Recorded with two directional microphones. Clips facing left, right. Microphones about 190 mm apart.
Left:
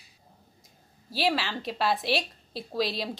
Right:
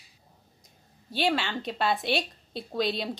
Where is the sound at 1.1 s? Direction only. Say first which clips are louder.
Right 1 dB; centre (ahead or behind).